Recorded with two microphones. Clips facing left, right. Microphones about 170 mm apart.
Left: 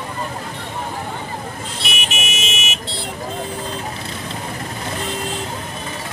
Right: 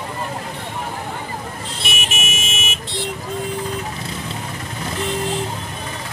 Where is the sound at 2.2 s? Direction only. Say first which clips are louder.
Left 1 dB; 50° right (ahead or behind).